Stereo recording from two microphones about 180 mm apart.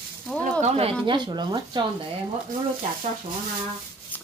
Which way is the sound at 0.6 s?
35° right (ahead or behind).